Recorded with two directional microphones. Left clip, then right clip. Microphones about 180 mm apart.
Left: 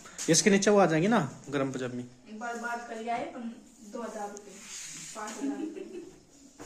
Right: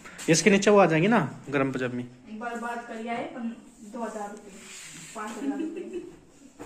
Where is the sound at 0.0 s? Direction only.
20° left (ahead or behind).